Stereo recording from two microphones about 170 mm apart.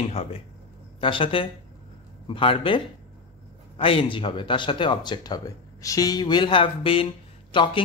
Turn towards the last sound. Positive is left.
turn(degrees=30)  # may be behind; listen again after turning